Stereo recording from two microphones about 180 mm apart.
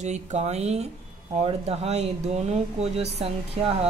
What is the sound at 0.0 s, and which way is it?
Speech, 40° right (ahead or behind).